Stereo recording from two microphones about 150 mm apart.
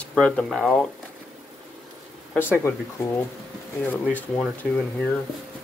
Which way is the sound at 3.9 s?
10° left (ahead or behind).